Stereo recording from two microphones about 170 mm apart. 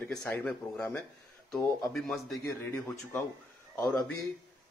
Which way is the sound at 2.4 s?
15° left (ahead or behind).